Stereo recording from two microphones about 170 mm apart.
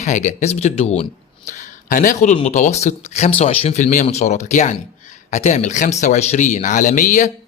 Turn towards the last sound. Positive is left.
turn(degrees=50)  # may be behind; listen again after turning